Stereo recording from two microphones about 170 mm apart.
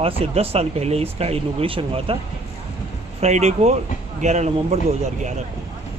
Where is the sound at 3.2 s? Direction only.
40° right (ahead or behind).